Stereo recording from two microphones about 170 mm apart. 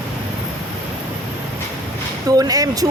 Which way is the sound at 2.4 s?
20° right (ahead or behind).